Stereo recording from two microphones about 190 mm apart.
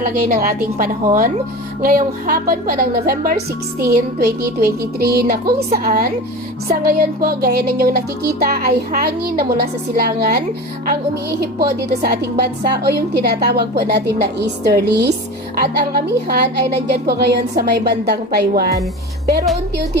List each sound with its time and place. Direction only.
0.0 s a woman's voice: 50° right (ahead or behind)